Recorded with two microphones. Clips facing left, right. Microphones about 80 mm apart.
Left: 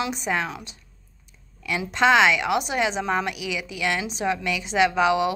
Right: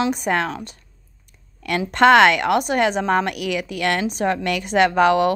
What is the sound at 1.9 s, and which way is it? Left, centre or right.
A woman's voice, right.